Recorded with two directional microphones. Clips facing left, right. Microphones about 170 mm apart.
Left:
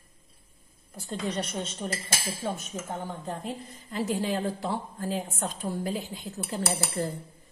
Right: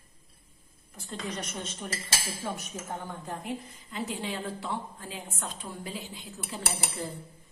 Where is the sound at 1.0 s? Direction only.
35° left (ahead or behind).